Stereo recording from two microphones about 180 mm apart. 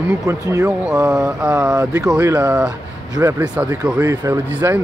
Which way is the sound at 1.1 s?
5° right (ahead or behind).